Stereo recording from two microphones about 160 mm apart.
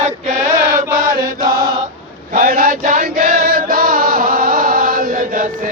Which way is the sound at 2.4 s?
65° right (ahead or behind).